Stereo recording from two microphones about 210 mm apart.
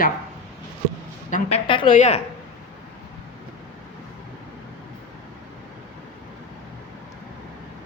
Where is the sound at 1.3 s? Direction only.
25° left (ahead or behind).